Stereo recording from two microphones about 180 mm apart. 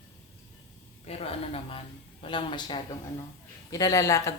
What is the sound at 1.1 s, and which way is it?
Speech, 35° left (ahead or behind).